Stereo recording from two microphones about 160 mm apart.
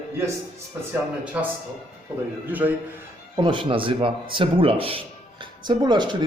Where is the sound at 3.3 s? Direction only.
30° right (ahead or behind).